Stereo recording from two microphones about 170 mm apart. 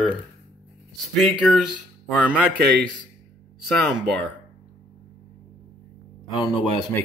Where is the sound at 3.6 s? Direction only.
Centre (ahead or behind).